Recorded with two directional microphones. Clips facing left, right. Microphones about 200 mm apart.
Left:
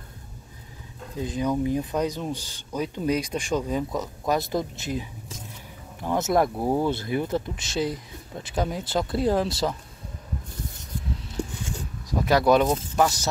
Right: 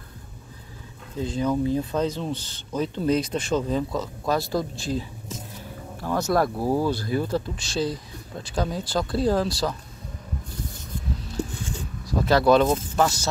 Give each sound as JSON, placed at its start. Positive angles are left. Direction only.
{"t": 1.2, "sound": "speech", "side_deg": 15}
{"t": 12.1, "sound": "speech", "side_deg": 15}